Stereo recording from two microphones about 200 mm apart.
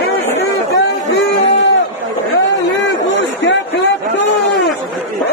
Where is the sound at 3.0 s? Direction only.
65° left (ahead or behind).